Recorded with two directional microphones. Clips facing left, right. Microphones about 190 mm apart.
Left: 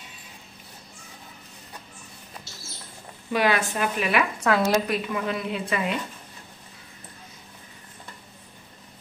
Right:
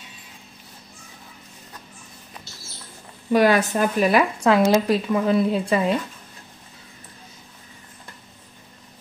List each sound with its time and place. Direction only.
3.3 s speech: 45° right (ahead or behind)
4.4 s speech: 20° right (ahead or behind)
4.9 s speech: 35° right (ahead or behind)